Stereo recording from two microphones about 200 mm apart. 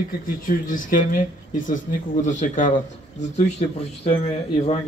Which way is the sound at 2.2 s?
40° left (ahead or behind).